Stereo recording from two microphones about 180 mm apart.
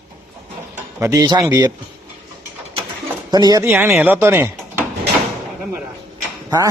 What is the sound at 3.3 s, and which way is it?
Speech, 20° right (ahead or behind).